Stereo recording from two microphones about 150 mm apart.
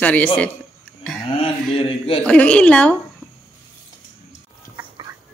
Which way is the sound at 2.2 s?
10° left (ahead or behind).